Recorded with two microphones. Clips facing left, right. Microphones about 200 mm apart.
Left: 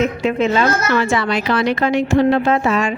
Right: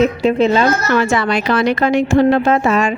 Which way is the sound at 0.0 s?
35° right (ahead or behind).